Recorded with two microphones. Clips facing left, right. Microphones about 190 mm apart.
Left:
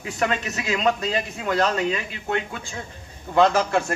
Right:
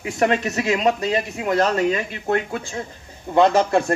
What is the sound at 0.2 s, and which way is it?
A man's voice, 35° right (ahead or behind).